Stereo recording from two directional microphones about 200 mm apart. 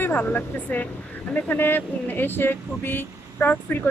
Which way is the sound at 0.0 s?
10° left (ahead or behind).